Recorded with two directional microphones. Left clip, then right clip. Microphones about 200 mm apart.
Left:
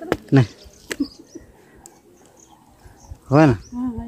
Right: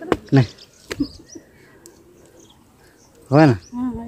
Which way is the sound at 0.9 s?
20° left (ahead or behind).